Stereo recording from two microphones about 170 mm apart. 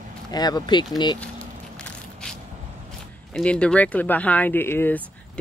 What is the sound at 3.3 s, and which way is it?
Speech, 5° left (ahead or behind).